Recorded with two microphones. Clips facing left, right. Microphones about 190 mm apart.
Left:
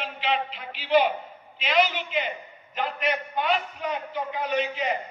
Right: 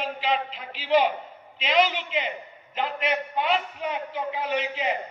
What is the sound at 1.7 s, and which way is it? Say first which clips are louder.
A man's voice: right 1 dB; 25° right (ahead or behind).